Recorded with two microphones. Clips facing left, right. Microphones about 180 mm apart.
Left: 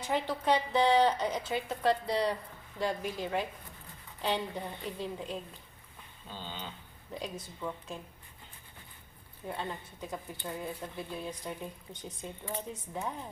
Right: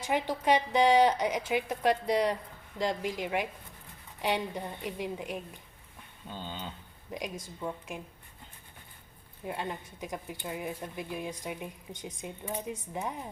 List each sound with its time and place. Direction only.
0.0 s a woman's voice: 15° right (ahead or behind)
7.1 s a woman's voice: 15° right (ahead or behind)
9.5 s a woman's voice: 15° right (ahead or behind)